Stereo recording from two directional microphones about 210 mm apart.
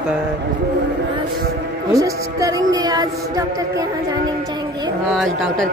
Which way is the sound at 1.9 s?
15° right (ahead or behind).